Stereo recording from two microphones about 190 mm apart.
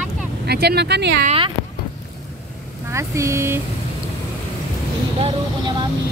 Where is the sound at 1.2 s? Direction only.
30° right (ahead or behind).